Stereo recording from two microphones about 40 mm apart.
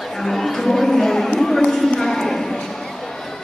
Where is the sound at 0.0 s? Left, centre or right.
Centre.